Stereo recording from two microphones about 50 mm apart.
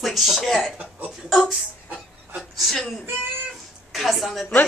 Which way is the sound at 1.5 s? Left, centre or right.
Centre.